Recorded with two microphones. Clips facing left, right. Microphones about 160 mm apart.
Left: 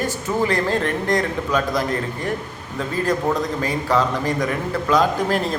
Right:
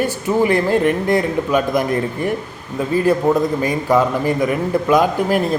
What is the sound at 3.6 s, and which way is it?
A man's voice, 15° right (ahead or behind).